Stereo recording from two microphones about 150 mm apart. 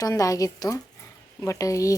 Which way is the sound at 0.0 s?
25° left (ahead or behind).